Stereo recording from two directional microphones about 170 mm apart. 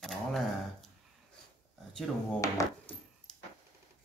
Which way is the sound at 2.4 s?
20° left (ahead or behind).